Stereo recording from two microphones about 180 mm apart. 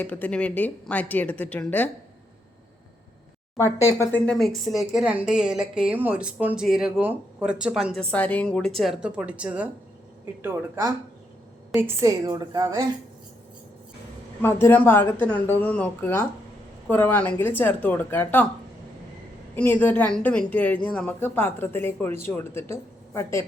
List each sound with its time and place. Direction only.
0.0 s a woman's voice: 10° left (ahead or behind)
3.8 s a woman's voice: 15° left (ahead or behind)
4.3 s a woman's voice: centre (ahead or behind)
8.1 s a woman's voice: 10° left (ahead or behind); by 12.8 s 20° right (ahead or behind)
14.4 s a woman's voice: 10° left (ahead or behind)
19.5 s a woman's voice: 10° left (ahead or behind)